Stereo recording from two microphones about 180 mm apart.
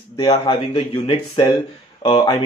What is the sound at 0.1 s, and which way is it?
Speech, 25° left (ahead or behind).